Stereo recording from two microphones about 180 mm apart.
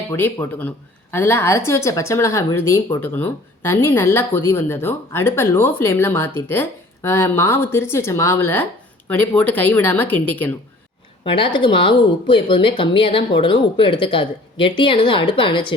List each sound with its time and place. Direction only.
0.1 s speech: 10° left (ahead or behind)
11.3 s speech: 30° left (ahead or behind)